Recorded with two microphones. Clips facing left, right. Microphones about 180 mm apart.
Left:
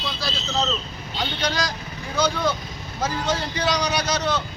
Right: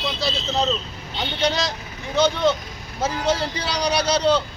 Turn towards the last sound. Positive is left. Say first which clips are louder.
# right 5 dB
turn(degrees=-30)  # may be behind; listen again after turning